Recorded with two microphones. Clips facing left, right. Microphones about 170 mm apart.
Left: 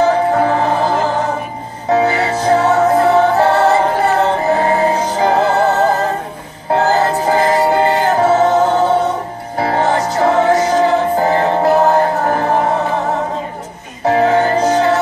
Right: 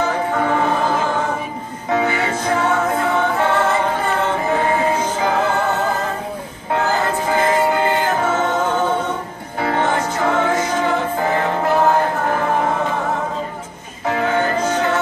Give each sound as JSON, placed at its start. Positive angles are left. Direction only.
{"t": 0.0, "sound": "music", "side_deg": 35}
{"t": 6.7, "sound": "music", "side_deg": 35}
{"t": 14.0, "sound": "music", "side_deg": 35}